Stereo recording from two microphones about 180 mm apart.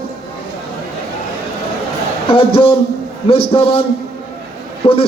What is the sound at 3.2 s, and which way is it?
Music, 30° left (ahead or behind).